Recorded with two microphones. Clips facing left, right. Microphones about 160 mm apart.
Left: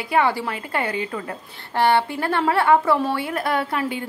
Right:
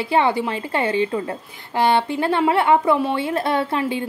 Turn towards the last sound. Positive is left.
turn(degrees=-25)  # may be behind; listen again after turning